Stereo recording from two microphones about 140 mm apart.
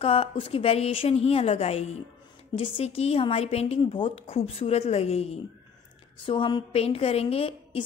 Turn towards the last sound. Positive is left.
turn(degrees=45)  # may be behind; listen again after turning